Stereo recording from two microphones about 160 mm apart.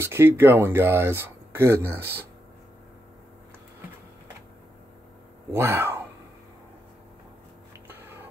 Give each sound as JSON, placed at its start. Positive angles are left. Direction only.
{"t": 0.0, "sound": "speech", "side_deg": -15}
{"t": 5.5, "sound": "speech", "side_deg": -15}